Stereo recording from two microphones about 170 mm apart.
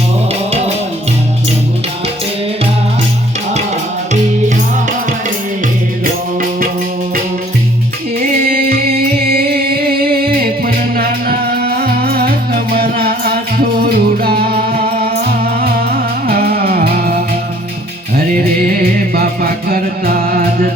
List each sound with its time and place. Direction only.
4.1 s music: 45° right (ahead or behind)
8.2 s music: 65° right (ahead or behind)
18.9 s music: 60° right (ahead or behind)